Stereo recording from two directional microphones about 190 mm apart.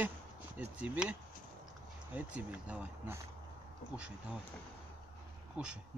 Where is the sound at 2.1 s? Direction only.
5° right (ahead or behind).